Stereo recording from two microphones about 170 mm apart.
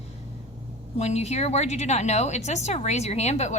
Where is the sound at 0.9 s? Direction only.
40° left (ahead or behind).